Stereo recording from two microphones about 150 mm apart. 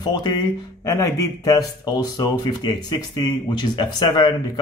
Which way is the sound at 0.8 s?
20° left (ahead or behind).